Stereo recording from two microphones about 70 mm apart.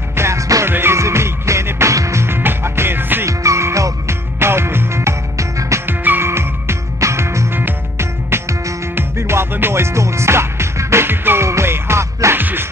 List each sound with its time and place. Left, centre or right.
0.1 s music: right
0.7 s music: right
3.3 s music: right
5.9 s music: right
12.4 s music: right